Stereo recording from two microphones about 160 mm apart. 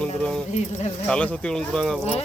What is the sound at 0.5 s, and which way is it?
Speech, 45° left (ahead or behind).